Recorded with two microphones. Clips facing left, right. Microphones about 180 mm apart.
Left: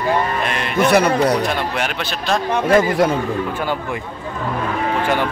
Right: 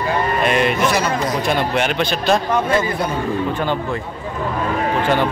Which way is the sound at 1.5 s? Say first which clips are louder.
Right 3 dB; centre (ahead or behind).